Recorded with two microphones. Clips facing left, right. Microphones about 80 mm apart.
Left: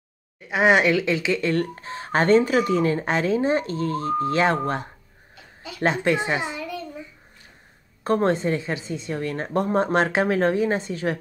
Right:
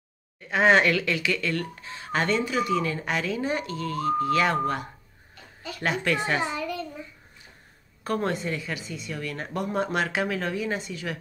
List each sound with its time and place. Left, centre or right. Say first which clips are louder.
0.5 s a child's voice: left 2 dB; centre
1.5 s speech: left 6 dB; left
5.3 s a sound: even; centre
5.8 s a child's voice: left 5 dB; left
8.0 s speech: left 7 dB; left